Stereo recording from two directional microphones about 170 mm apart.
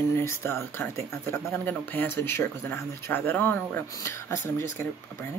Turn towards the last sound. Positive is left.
turn(degrees=15)  # may be behind; listen again after turning